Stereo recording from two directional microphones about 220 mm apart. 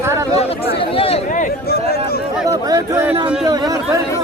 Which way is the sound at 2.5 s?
15° right (ahead or behind).